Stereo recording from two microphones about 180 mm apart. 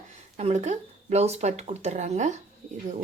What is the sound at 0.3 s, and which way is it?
Speech, 40° right (ahead or behind).